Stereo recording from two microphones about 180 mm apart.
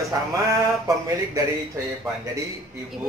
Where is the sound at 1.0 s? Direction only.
15° right (ahead or behind).